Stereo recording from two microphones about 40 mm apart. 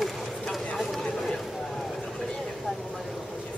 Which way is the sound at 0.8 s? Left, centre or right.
Centre.